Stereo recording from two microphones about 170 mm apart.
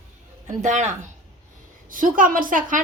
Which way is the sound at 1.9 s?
55° right (ahead or behind).